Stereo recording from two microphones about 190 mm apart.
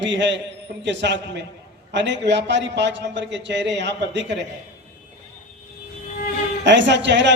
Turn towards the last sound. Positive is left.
turn(degrees=-70)  # may be behind; listen again after turning